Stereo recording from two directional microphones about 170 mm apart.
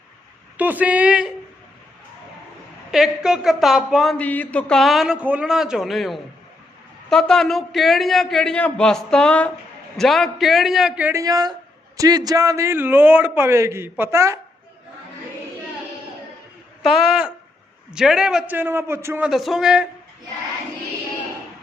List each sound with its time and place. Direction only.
0.5 s a man's voice: 10° right (ahead or behind)
2.9 s speech: 5° right (ahead or behind)
11.2 s a man's voice: 20° right (ahead or behind)
16.8 s speech: centre (ahead or behind)